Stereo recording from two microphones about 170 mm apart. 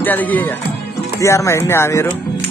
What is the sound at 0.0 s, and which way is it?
Speech, 10° left (ahead or behind).